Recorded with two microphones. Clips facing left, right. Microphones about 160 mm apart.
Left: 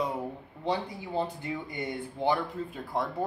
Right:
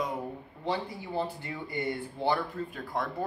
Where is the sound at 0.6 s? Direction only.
15° left (ahead or behind).